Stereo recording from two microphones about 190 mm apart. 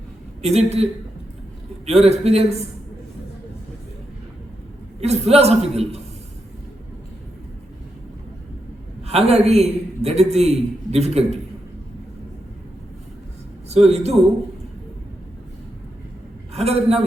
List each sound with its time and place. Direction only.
0.4 s a man's voice: 35° right (ahead or behind)
1.9 s a man's voice: 35° right (ahead or behind)
4.9 s a man's voice: 35° right (ahead or behind)
9.0 s a man's voice: 35° right (ahead or behind)
13.7 s a man's voice: 35° right (ahead or behind)
16.6 s a man's voice: 35° right (ahead or behind)